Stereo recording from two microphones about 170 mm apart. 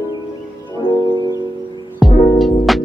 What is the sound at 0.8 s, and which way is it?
Music, 25° left (ahead or behind).